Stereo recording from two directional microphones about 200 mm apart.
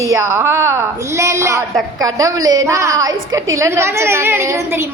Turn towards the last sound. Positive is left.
turn(degrees=-15)  # may be behind; listen again after turning